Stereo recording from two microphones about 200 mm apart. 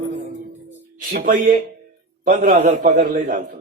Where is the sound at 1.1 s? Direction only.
45° right (ahead or behind).